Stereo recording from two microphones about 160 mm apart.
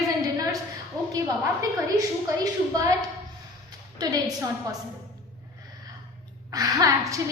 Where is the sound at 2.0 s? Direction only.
20° right (ahead or behind).